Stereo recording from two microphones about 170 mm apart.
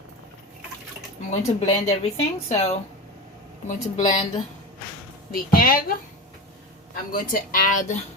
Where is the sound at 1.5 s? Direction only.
40° left (ahead or behind).